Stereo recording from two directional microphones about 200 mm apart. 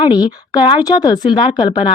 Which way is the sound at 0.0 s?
20° left (ahead or behind).